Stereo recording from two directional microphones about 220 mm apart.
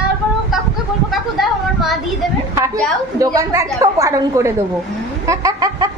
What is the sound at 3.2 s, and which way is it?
Speech, 15° right (ahead or behind).